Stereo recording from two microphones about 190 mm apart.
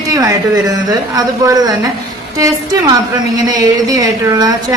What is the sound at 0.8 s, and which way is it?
Speech, 20° right (ahead or behind).